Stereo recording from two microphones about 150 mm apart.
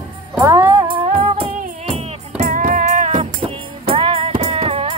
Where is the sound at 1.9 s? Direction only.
55° right (ahead or behind).